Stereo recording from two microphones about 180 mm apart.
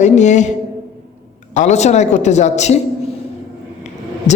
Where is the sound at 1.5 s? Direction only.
40° left (ahead or behind).